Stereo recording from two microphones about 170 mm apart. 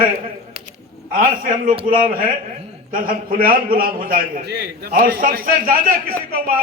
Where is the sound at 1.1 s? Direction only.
55° right (ahead or behind).